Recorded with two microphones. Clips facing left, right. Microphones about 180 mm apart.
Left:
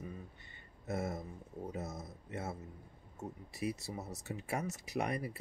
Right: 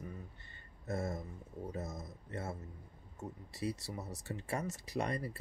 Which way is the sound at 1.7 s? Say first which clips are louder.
Even; 5° left (ahead or behind).